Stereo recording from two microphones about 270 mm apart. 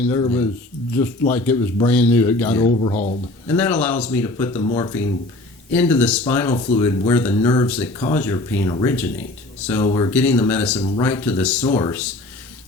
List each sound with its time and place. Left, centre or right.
0.0 s speech: centre
10.8 s speech: centre
11.0 s speech: centre